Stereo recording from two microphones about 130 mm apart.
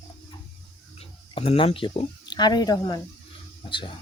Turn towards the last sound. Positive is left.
turn(degrees=40)  # may be behind; listen again after turning